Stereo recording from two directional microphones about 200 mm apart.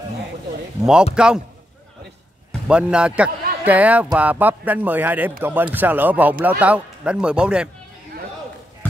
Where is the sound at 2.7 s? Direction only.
5° right (ahead or behind).